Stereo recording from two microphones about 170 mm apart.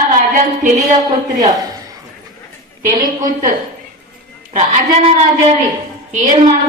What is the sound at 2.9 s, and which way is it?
Speech, 50° right (ahead or behind).